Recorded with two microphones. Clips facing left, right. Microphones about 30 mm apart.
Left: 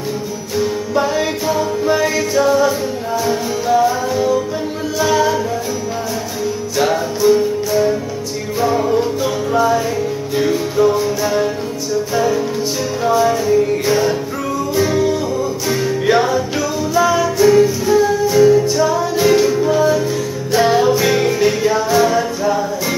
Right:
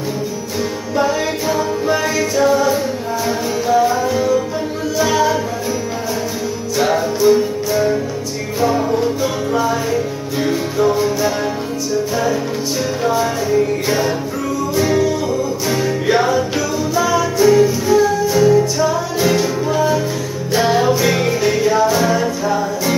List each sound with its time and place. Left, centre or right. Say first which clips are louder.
0.9 s music: right 1 dB; centre
6.8 s music: right 1 dB; centre
13.0 s music: left 5 dB; centre